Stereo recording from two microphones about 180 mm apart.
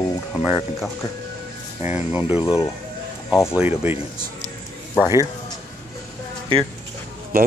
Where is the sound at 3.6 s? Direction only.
10° right (ahead or behind).